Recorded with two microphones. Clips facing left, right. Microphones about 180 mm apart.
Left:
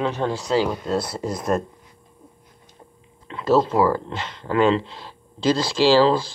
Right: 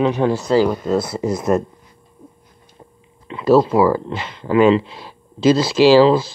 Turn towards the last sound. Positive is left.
turn(degrees=-10)  # may be behind; listen again after turning